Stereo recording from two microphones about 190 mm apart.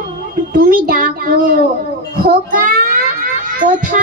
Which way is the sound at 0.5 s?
45° right (ahead or behind).